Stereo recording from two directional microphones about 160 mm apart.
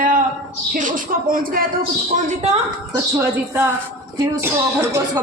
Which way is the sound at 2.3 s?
45° right (ahead or behind).